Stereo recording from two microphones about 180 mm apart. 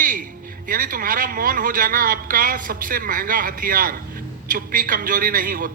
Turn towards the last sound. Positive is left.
turn(degrees=-50)  # may be behind; listen again after turning